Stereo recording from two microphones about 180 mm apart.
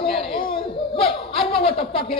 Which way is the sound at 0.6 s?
30° left (ahead or behind).